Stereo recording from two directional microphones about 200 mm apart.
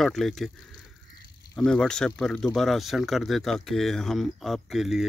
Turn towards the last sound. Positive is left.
turn(degrees=0)  # may be behind; listen again after turning